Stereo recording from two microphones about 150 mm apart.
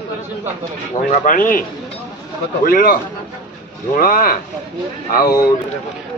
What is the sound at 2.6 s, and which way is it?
Speech, 75° left (ahead or behind).